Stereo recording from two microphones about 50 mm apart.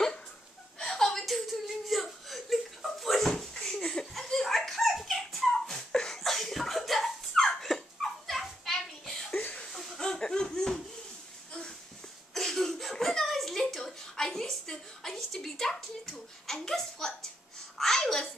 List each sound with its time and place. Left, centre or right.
0.7 s whimper: centre
4.1 s a sound: centre
9.4 s chuckle: left
9.7 s laughter: centre
12.4 s a sound: centre
17.7 s babbling: centre